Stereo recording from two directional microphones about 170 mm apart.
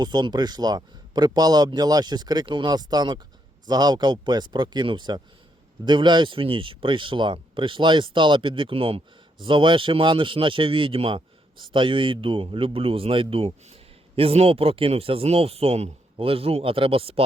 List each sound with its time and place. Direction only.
0.0 s a man's voice: 25° right (ahead or behind)